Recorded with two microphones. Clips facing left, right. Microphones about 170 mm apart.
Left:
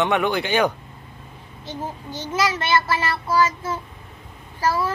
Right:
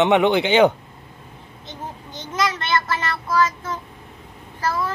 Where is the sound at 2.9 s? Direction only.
10° left (ahead or behind).